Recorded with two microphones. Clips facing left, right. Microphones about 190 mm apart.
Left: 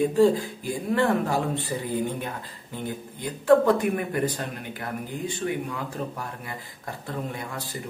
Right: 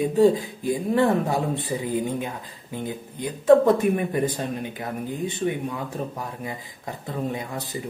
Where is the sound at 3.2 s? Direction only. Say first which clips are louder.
Right 3 dB; 20° right (ahead or behind).